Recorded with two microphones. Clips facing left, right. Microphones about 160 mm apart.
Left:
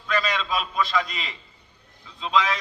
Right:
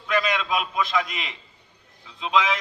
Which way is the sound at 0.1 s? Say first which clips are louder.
Right 2 dB; 15° right (ahead or behind).